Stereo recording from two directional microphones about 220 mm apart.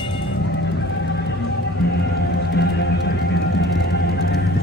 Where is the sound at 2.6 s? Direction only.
50° left (ahead or behind).